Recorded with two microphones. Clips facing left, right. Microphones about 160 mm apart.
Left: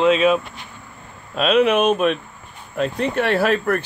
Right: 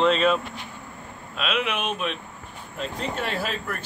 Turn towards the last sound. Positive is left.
turn(degrees=65)  # may be behind; listen again after turning